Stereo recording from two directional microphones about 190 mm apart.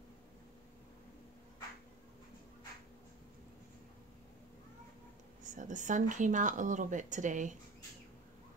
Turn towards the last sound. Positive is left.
turn(degrees=-40)  # may be behind; listen again after turning